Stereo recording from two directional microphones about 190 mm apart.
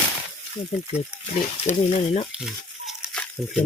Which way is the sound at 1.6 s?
35° left (ahead or behind).